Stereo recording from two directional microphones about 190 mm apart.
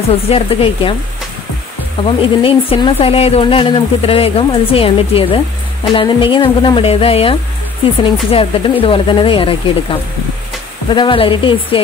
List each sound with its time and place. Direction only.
0.1 s speech: 30° left (ahead or behind)
2.0 s speech: 30° left (ahead or behind)